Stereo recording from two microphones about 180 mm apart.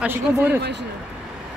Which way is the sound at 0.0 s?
10° right (ahead or behind).